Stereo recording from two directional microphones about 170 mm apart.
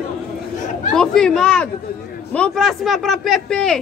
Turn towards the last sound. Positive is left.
turn(degrees=5)  # may be behind; listen again after turning